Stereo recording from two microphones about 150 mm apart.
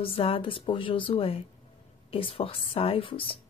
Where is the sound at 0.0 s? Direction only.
40° left (ahead or behind).